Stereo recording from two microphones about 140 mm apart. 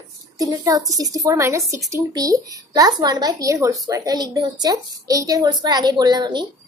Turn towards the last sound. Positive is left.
turn(degrees=-30)  # may be behind; listen again after turning